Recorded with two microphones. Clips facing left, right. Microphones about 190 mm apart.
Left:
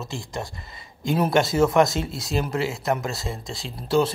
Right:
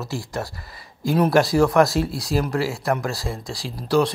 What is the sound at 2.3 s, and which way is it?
Speech, 25° left (ahead or behind).